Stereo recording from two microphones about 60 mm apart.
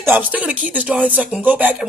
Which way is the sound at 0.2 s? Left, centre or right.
Right.